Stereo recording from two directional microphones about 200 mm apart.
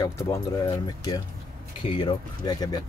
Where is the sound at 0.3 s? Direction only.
15° left (ahead or behind).